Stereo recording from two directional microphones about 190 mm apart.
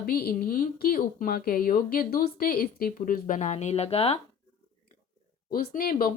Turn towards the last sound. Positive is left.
turn(degrees=50)  # may be behind; listen again after turning